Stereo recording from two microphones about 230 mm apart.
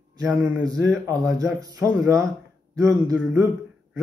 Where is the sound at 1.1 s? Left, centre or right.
Centre.